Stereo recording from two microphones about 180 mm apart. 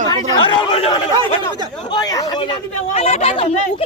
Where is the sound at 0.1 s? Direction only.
25° left (ahead or behind).